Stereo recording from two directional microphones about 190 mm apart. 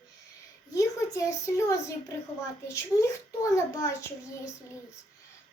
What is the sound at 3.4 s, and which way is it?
A child's voice, 15° left (ahead or behind).